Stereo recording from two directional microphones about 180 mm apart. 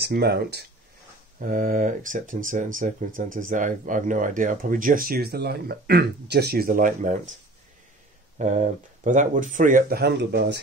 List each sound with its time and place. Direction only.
0.0 s speech: 65° right (ahead or behind)
1.4 s speech: 50° right (ahead or behind)
8.4 s speech: 40° right (ahead or behind); by 10.6 s 65° right (ahead or behind)